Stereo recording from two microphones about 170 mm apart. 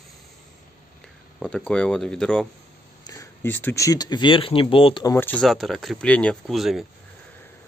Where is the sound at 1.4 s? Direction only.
5° left (ahead or behind).